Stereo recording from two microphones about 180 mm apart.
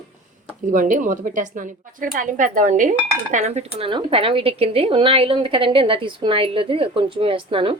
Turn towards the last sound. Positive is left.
turn(degrees=-30)  # may be behind; listen again after turning